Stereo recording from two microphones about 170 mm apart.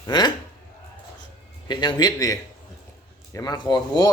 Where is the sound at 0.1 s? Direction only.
25° left (ahead or behind).